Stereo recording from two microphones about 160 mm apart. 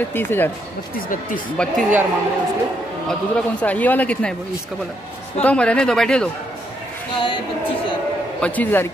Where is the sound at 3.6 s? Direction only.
10° left (ahead or behind).